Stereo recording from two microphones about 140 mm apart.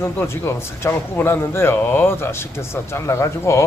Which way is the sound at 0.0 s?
20° left (ahead or behind).